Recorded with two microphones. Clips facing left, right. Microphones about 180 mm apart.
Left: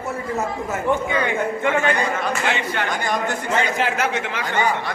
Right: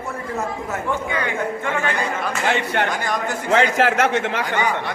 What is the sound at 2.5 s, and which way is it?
Speech, 55° right (ahead or behind).